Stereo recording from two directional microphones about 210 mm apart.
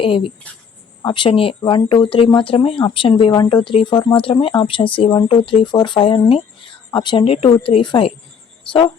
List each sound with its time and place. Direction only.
0.0 s speech: 25° left (ahead or behind)